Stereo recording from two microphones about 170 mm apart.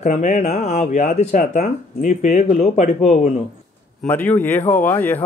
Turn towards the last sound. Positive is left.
turn(degrees=10)  # may be behind; listen again after turning